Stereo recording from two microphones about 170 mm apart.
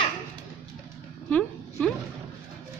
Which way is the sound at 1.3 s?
5° left (ahead or behind).